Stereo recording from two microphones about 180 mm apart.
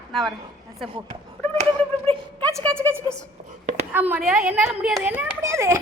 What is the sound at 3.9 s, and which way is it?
A woman's voice, 10° right (ahead or behind).